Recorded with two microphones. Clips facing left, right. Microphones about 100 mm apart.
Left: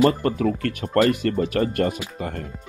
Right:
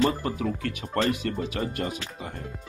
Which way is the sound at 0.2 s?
55° left (ahead or behind).